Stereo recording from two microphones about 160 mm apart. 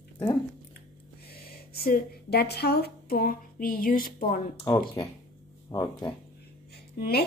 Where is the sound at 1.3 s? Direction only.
75° left (ahead or behind).